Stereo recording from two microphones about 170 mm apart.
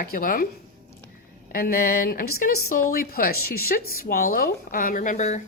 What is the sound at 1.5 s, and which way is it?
Speech, 60° left (ahead or behind).